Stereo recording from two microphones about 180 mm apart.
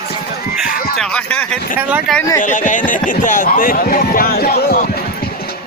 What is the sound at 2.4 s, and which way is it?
Speech, 45° left (ahead or behind).